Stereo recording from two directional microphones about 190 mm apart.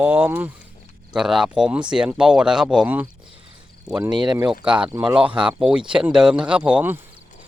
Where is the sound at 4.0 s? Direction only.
20° right (ahead or behind).